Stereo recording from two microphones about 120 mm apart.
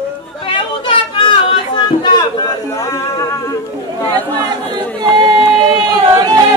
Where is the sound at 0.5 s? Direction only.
45° left (ahead or behind).